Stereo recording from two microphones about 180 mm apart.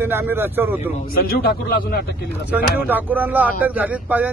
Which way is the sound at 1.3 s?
55° left (ahead or behind).